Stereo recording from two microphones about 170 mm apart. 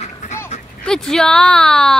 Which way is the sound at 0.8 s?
5° left (ahead or behind).